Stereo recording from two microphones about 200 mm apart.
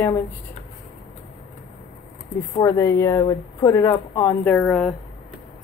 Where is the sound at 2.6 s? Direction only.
15° left (ahead or behind).